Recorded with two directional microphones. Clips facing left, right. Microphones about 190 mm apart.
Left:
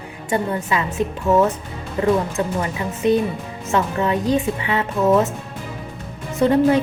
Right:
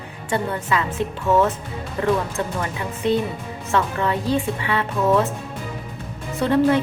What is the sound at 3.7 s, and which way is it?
A woman's voice, 15° left (ahead or behind).